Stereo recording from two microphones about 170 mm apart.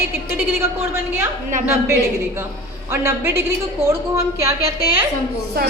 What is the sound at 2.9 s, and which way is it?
A woman's voice, 15° right (ahead or behind).